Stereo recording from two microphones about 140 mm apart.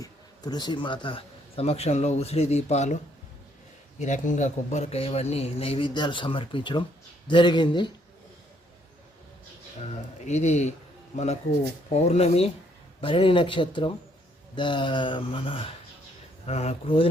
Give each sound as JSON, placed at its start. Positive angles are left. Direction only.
{"t": 0.0, "sound": "a man's voice", "side_deg": 30}
{"t": 4.0, "sound": "a man's voice", "side_deg": 60}
{"t": 9.8, "sound": "speech", "side_deg": 55}
{"t": 12.0, "sound": "a man's voice", "side_deg": 50}